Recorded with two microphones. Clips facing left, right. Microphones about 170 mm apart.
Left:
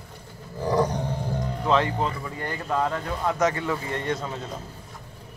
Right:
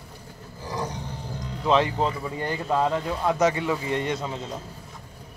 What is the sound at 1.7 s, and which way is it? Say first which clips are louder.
Speech: right 2 dB; 20° right (ahead or behind).